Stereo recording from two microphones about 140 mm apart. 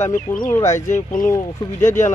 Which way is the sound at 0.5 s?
20° left (ahead or behind).